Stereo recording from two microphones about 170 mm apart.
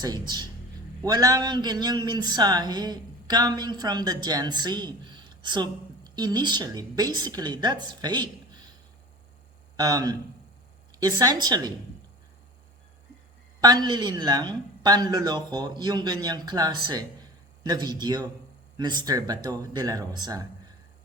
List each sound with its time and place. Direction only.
0.0 s speech: 25° right (ahead or behind)
9.7 s speech: 25° right (ahead or behind)
13.6 s speech: 25° right (ahead or behind)